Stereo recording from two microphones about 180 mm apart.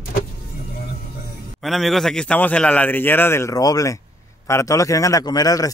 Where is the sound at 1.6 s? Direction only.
Centre (ahead or behind).